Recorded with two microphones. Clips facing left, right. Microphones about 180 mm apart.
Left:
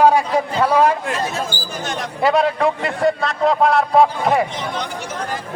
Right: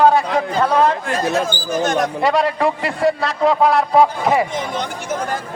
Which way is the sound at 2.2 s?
Centre (ahead or behind).